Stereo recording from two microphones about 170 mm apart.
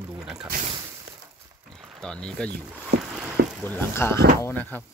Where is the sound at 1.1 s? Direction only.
75° right (ahead or behind).